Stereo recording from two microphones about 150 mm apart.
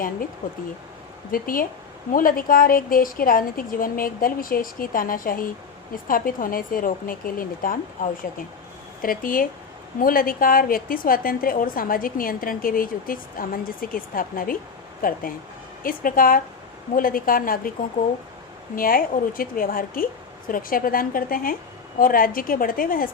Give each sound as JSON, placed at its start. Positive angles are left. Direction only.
{"t": 1.3, "sound": "a woman's voice", "side_deg": 70}
{"t": 18.8, "sound": "a woman's voice", "side_deg": 75}